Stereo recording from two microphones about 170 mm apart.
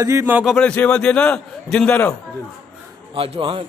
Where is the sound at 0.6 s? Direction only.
5° left (ahead or behind).